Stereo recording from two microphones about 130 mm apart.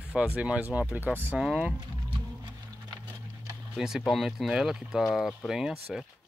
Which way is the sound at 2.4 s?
35° right (ahead or behind).